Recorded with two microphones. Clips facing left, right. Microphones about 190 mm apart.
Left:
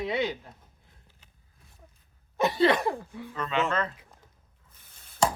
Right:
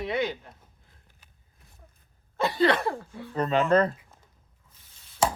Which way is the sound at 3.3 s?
40° right (ahead or behind).